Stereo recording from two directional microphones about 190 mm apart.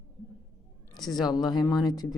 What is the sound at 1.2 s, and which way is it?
Speech, 20° left (ahead or behind).